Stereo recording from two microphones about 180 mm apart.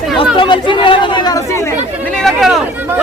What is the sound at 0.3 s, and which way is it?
Speech, 25° left (ahead or behind).